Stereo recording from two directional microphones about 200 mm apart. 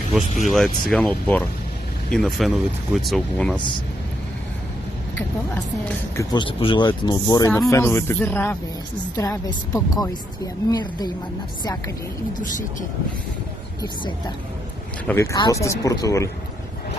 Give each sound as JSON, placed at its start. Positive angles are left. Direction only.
{"t": 0.5, "sound": "speech", "side_deg": 0}
{"t": 5.5, "sound": "speech", "side_deg": 10}
{"t": 6.3, "sound": "a woman's voice", "side_deg": 25}
{"t": 15.0, "sound": "speech", "side_deg": 15}